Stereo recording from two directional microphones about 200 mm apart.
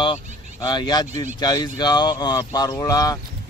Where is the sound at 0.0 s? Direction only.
20° left (ahead or behind).